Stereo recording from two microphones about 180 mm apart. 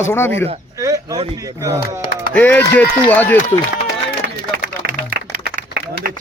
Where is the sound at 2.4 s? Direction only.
10° left (ahead or behind).